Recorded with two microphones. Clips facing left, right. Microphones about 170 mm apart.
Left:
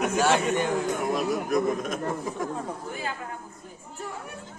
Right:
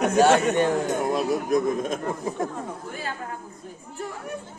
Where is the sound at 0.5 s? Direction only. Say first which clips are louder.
Right 4 dB; 60° right (ahead or behind).